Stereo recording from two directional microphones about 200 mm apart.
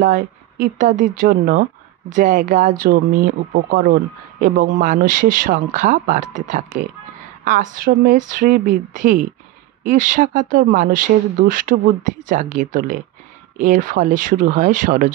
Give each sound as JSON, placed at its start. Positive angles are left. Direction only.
{"t": 0.0, "sound": "speech", "side_deg": -40}